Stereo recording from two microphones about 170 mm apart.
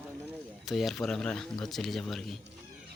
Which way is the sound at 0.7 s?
Centre (ahead or behind).